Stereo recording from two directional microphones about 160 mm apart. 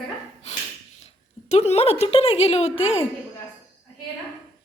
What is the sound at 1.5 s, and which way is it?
A woman's voice, 45° left (ahead or behind).